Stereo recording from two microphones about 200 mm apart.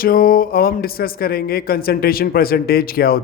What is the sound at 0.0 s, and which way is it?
Speech, 45° left (ahead or behind).